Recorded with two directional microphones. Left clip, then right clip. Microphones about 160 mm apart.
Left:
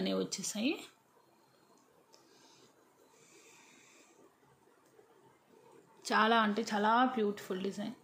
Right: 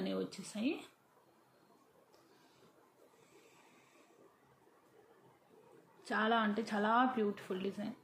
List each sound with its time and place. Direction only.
0.0 s speech: 30° left (ahead or behind)
6.0 s speech: 35° left (ahead or behind)